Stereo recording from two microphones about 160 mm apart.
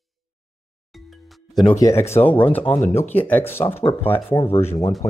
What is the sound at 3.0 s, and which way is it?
Speech, 10° left (ahead or behind).